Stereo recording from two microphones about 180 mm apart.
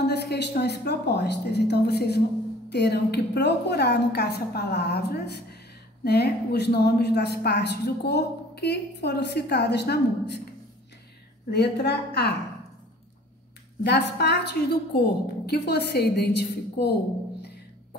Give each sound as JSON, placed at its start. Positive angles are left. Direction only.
{"t": 0.0, "sound": "a woman's voice", "side_deg": 65}
{"t": 11.5, "sound": "a woman's voice", "side_deg": 70}
{"t": 13.8, "sound": "a woman's voice", "side_deg": 70}